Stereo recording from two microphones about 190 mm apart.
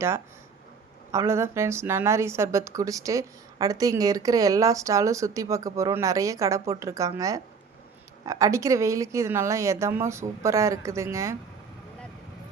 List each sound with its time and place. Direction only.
1.1 s a woman's voice: 15° right (ahead or behind)